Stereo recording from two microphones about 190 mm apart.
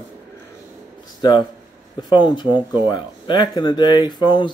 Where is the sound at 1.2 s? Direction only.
25° left (ahead or behind).